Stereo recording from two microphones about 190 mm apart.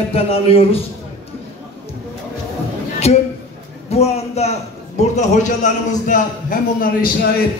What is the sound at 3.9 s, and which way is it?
A man's voice, 35° left (ahead or behind).